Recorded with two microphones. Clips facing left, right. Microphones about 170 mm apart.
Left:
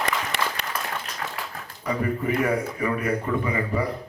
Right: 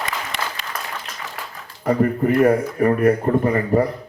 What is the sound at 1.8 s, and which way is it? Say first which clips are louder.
Speech: right 8 dB; 55° right (ahead or behind).